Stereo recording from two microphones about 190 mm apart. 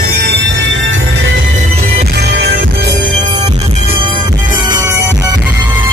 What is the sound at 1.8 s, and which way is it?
Music, 55° right (ahead or behind).